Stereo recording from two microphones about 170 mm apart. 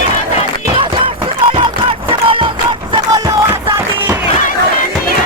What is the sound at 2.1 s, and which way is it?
Battle cry, 30° right (ahead or behind).